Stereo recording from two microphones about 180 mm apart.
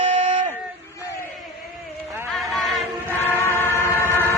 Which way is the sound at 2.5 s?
Centre (ahead or behind).